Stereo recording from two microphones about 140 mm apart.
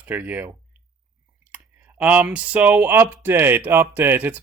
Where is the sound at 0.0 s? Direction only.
10° right (ahead or behind).